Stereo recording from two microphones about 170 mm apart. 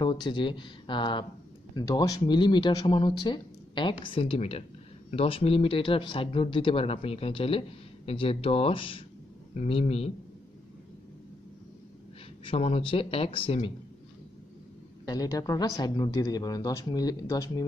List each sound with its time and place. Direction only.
0.0 s speech: 30° left (ahead or behind)
12.4 s speech: 35° left (ahead or behind)
15.0 s speech: 25° left (ahead or behind)